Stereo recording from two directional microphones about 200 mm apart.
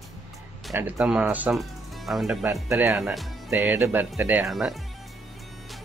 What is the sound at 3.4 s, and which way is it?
Speech, 10° right (ahead or behind).